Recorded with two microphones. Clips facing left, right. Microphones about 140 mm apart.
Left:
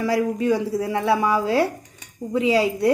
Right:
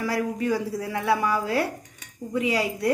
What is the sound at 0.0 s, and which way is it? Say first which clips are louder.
A woman's voice: left 5 dB; 25° left (ahead or behind).